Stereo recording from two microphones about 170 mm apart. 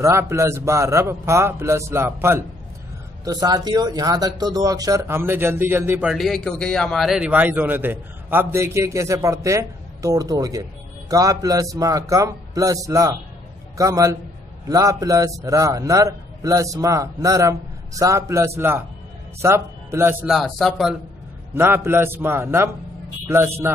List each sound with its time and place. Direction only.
0.0 s a man's voice: 15° right (ahead or behind)
6.0 s a man's voice: centre (ahead or behind); by 20.2 s 15° right (ahead or behind)
20.2 s speech: centre (ahead or behind)
21.5 s a man's voice: 15° right (ahead or behind)